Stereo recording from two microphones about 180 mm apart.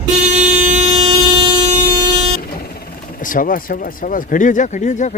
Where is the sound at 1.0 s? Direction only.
30° right (ahead or behind).